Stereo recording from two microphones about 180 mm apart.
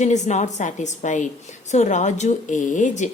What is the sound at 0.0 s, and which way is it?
A woman's voice, 40° left (ahead or behind).